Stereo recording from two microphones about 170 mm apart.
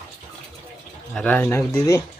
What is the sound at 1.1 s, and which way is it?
Speech, 10° left (ahead or behind).